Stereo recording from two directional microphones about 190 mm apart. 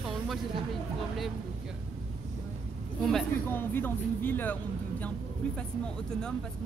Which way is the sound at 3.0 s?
5° left (ahead or behind).